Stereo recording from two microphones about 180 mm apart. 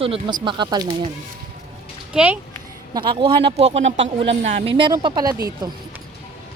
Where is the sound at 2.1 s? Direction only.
5° right (ahead or behind).